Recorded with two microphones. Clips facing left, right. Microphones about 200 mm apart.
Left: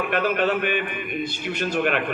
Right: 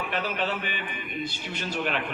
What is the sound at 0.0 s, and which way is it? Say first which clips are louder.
A man's voice: left 7 dB; 55° left (ahead or behind).